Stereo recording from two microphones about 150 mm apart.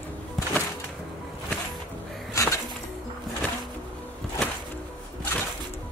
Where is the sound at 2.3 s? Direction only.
20° left (ahead or behind).